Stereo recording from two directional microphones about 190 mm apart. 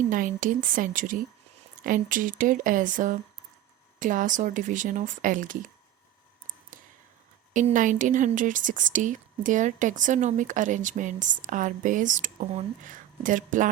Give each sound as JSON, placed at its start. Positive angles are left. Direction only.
{"t": 0.1, "sound": "speech", "side_deg": -45}
{"t": 7.5, "sound": "speech", "side_deg": -45}